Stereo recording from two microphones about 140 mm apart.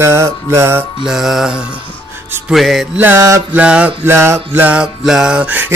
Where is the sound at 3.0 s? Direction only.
15° right (ahead or behind).